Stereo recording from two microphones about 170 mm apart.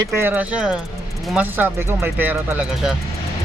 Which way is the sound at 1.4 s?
10° right (ahead or behind).